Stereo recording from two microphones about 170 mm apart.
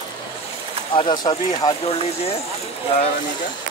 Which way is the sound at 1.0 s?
30° left (ahead or behind).